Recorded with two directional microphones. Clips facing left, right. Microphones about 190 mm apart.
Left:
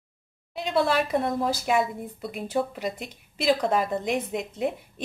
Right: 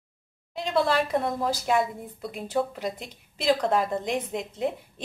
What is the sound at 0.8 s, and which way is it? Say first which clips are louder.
A woman's voice: left 1 dB; 5° left (ahead or behind).